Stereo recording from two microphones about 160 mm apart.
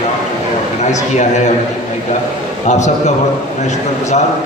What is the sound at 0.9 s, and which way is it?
Speech, 45° left (ahead or behind).